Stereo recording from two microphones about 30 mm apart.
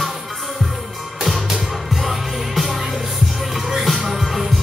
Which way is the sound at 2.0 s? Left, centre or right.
Centre.